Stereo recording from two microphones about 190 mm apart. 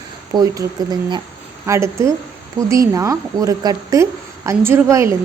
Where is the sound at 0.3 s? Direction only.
20° right (ahead or behind).